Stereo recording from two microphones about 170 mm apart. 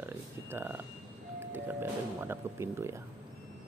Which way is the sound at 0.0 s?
10° right (ahead or behind).